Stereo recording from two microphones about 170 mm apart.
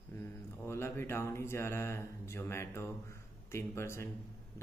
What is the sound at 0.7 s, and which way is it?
Speech, 15° left (ahead or behind).